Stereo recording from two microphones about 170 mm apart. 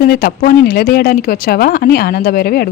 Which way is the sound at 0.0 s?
60° left (ahead or behind).